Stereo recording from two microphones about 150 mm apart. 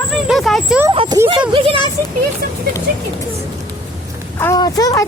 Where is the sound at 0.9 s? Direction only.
30° right (ahead or behind).